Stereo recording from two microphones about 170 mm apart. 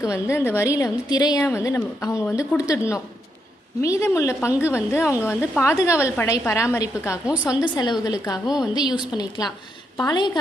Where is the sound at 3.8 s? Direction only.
20° left (ahead or behind).